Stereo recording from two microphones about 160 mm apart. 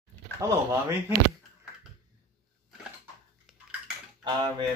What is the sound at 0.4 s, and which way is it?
Speech, 15° right (ahead or behind).